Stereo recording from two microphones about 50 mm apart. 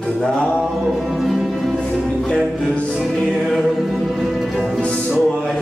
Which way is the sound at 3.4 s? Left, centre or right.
Centre.